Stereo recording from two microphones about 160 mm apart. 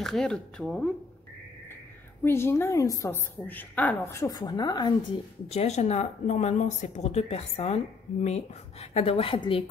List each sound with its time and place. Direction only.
0.0 s speech: 5° left (ahead or behind)
2.2 s a woman's voice: 15° left (ahead or behind)
5.5 s speech: 45° left (ahead or behind)